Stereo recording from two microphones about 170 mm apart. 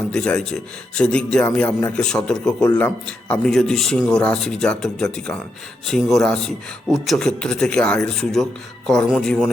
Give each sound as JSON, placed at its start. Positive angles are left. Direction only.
{"t": 0.1, "sound": "a man's voice", "side_deg": 5}